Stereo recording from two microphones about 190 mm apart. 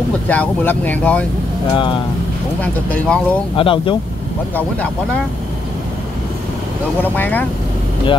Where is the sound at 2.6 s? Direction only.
5° left (ahead or behind).